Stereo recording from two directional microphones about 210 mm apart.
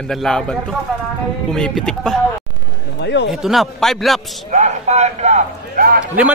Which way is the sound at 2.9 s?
55° left (ahead or behind).